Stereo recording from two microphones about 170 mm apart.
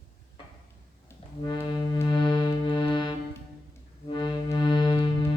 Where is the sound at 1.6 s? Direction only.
25° left (ahead or behind).